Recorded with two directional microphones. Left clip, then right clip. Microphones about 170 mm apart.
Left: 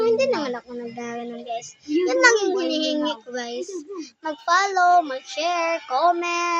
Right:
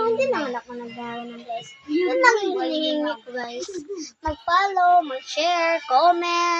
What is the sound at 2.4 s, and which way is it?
Child singing, 25° left (ahead or behind).